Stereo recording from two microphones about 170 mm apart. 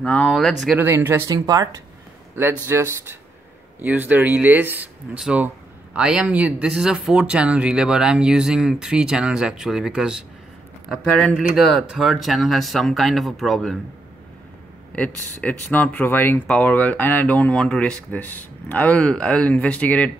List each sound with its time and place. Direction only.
0.0 s speech: 10° left (ahead or behind)
0.7 s speech: 15° right (ahead or behind)
15.0 s speech: 10° left (ahead or behind)